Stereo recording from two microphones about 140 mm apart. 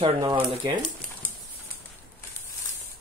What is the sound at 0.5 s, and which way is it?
Speech, 35° right (ahead or behind).